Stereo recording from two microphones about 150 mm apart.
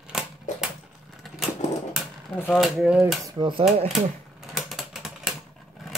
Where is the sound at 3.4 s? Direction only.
35° right (ahead or behind).